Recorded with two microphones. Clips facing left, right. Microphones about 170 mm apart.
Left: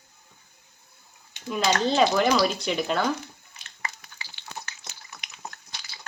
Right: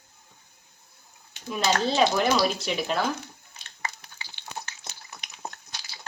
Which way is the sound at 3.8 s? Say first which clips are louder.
Right 1 dB; 25° right (ahead or behind).